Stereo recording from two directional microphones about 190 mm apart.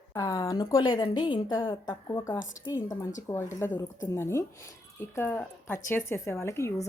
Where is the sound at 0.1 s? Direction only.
20° left (ahead or behind).